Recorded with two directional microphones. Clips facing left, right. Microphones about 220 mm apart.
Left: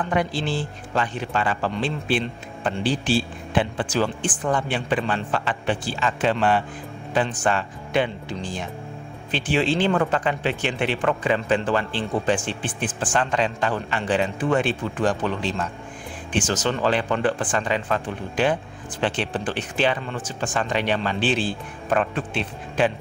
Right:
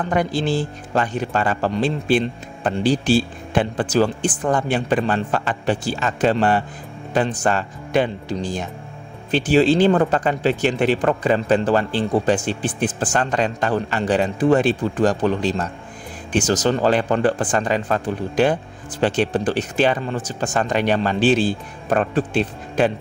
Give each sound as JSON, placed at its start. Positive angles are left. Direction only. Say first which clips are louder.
{"t": 0.0, "sound": "a man's voice", "louder": "right 3 dB", "side_deg": -45}